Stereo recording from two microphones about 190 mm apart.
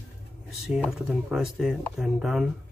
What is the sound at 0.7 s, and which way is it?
Speech, 5° right (ahead or behind).